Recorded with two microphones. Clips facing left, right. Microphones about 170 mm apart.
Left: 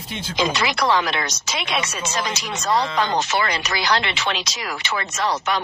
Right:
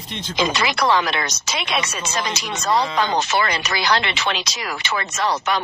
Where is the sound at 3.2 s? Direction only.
65° right (ahead or behind).